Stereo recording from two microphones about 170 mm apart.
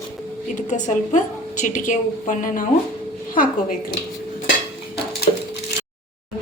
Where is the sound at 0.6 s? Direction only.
45° left (ahead or behind).